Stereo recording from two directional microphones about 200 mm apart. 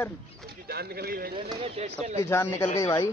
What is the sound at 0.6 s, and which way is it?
Speech, 50° right (ahead or behind).